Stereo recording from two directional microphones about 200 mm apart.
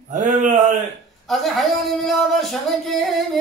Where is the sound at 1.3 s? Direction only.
Centre (ahead or behind).